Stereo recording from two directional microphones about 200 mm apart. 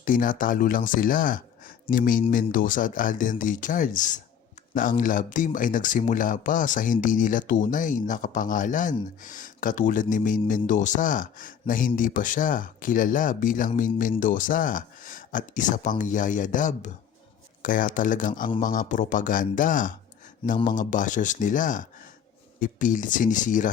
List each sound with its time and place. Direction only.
0.0 s speech: 40° left (ahead or behind)